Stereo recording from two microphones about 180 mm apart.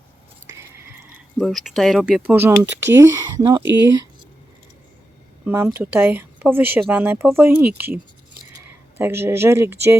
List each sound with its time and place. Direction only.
0.4 s a sound: 15° right (ahead or behind)
1.4 s speech: centre (ahead or behind); by 4.0 s 15° right (ahead or behind)
5.5 s speech: 10° right (ahead or behind)
9.0 s speech: 10° right (ahead or behind)